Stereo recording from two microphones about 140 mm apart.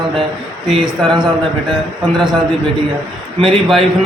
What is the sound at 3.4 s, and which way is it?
Speech, centre (ahead or behind).